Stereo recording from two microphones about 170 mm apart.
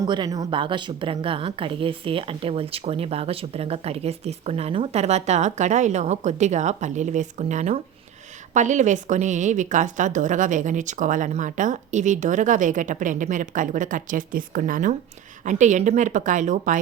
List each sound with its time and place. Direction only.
0.0 s a woman's voice: 25° right (ahead or behind); by 16.7 s 45° right (ahead or behind)